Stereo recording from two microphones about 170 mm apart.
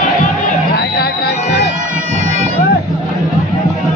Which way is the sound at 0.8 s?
70° left (ahead or behind).